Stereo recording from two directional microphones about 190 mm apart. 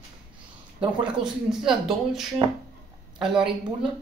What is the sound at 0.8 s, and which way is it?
Speech, 5° right (ahead or behind).